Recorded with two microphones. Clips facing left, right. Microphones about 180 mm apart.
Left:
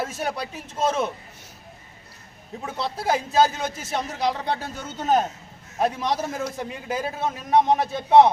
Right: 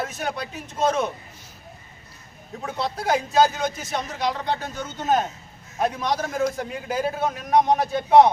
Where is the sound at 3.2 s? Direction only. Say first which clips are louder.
Right 1 dB; 25° left (ahead or behind).